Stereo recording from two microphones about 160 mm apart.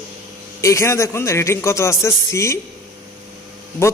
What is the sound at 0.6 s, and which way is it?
A man's voice, 20° left (ahead or behind).